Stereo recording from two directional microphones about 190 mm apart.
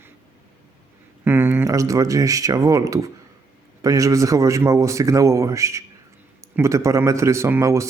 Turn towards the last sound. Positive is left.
turn(degrees=-15)  # may be behind; listen again after turning